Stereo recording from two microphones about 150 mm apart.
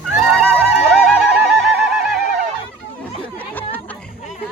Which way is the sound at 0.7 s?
Centre (ahead or behind).